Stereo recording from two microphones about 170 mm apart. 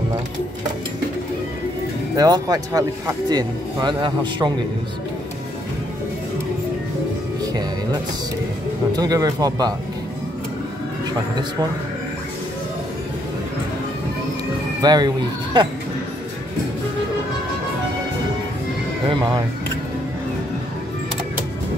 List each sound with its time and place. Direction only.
2.1 s speech: 25° right (ahead or behind)
7.4 s music: 25° right (ahead or behind)
8.9 s speech: 20° right (ahead or behind)
14.8 s speech: 25° right (ahead or behind)
19.0 s speech: 25° right (ahead or behind)